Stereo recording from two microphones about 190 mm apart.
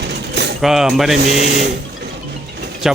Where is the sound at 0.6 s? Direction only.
Centre (ahead or behind).